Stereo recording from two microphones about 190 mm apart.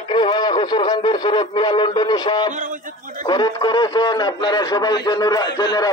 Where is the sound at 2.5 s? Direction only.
45° right (ahead or behind).